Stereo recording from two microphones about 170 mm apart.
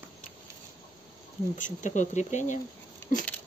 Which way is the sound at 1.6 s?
45° left (ahead or behind).